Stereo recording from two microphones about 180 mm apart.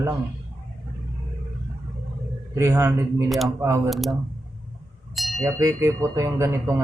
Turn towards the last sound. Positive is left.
turn(degrees=-15)  # may be behind; listen again after turning